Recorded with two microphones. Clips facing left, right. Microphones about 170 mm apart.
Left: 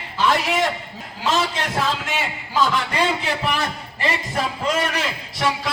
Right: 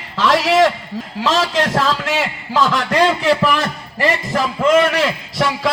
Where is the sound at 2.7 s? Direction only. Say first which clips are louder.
Right 6 dB; 75° right (ahead or behind).